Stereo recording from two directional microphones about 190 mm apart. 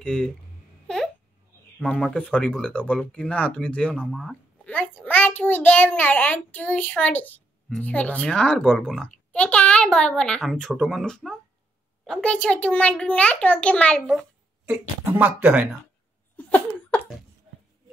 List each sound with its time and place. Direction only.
0.0 s speech: 5° left (ahead or behind)
0.8 s babbling: 5° left (ahead or behind)
1.8 s a child's voice: 5° left (ahead or behind)
14.7 s speech: 5° right (ahead or behind)
16.3 s laughter: 5° left (ahead or behind)